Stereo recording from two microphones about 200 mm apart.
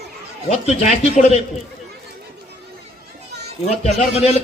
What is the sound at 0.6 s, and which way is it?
Speech, 35° left (ahead or behind).